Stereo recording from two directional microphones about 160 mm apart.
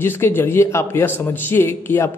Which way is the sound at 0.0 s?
15° left (ahead or behind).